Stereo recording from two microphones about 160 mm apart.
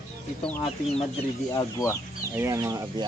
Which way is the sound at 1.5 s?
20° left (ahead or behind).